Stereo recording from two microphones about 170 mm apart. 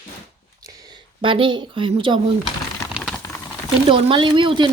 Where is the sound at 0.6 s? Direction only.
20° right (ahead or behind).